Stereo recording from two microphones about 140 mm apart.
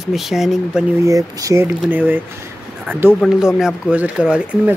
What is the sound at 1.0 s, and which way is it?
Speech, 25° right (ahead or behind).